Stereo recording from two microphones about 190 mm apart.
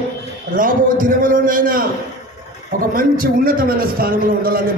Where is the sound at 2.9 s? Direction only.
50° right (ahead or behind).